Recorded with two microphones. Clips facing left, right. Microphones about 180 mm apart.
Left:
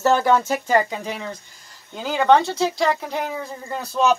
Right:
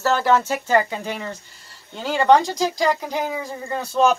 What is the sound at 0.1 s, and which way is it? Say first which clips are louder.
Speech: left 1 dB; 10° left (ahead or behind).